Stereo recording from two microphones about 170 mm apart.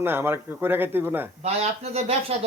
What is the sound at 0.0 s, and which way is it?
A man's voice, 15° right (ahead or behind).